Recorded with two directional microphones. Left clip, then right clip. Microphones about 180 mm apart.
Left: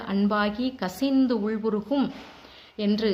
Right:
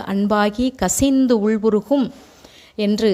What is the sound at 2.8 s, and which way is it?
Speech, 50° right (ahead or behind).